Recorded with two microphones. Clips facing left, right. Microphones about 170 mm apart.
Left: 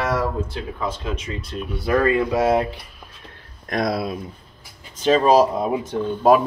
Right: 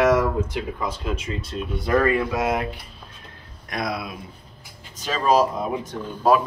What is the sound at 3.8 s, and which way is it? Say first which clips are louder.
Speech: left 5 dB; 35° left (ahead or behind).